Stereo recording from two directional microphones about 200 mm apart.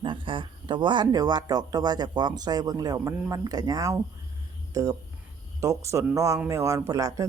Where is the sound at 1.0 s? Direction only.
20° right (ahead or behind).